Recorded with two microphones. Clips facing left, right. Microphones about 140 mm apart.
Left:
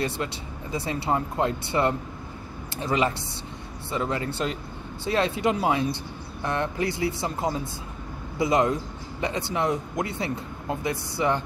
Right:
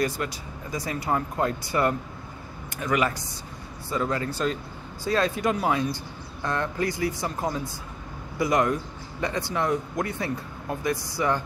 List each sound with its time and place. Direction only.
0.0 s speech: 25° left (ahead or behind)